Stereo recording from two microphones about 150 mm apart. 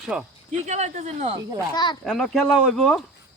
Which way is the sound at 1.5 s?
30° left (ahead or behind).